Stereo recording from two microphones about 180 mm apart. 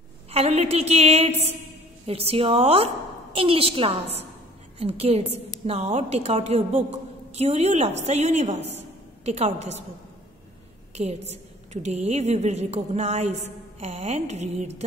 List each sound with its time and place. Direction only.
0.3 s a woman's voice: 35° right (ahead or behind)
11.0 s a woman's voice: 35° right (ahead or behind)